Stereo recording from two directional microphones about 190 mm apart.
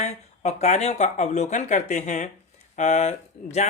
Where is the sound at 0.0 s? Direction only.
35° left (ahead or behind).